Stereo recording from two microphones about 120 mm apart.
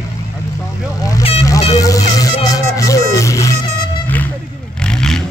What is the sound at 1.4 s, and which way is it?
Music, 30° left (ahead or behind).